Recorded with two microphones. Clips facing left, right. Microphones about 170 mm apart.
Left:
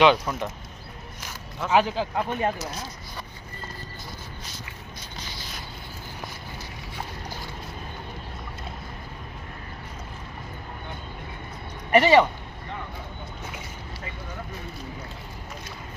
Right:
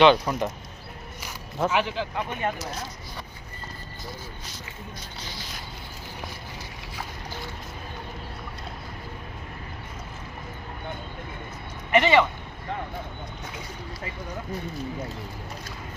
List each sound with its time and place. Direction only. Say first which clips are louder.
0.0 s speech: right 1 dB; centre (ahead or behind)
1.7 s speech: left 4 dB; 40° left (ahead or behind)
11.9 s speech: left 3 dB; 35° left (ahead or behind)